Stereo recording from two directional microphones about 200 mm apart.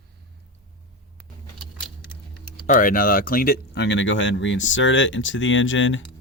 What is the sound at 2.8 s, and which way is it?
Speech, 45° left (ahead or behind).